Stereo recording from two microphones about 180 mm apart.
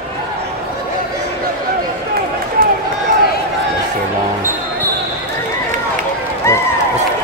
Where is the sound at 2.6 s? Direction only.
55° right (ahead or behind).